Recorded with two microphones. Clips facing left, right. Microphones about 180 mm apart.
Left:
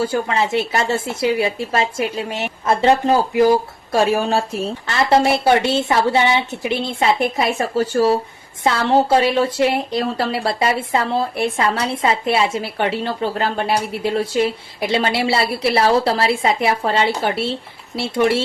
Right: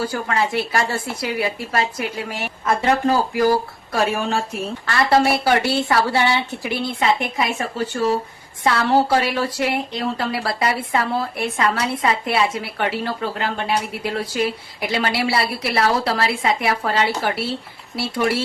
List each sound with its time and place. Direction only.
0.0 s speech: 25° left (ahead or behind)
4.1 s a woman's voice: 35° left (ahead or behind)
4.9 s speech: 20° left (ahead or behind)
8.6 s speech: 25° left (ahead or behind)